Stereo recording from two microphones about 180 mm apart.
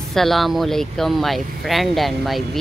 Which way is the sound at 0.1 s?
Centre (ahead or behind).